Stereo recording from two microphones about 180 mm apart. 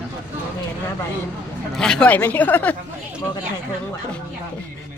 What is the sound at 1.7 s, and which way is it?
Speech, 5° left (ahead or behind).